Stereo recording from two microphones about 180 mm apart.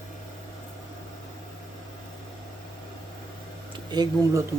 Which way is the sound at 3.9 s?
20° right (ahead or behind).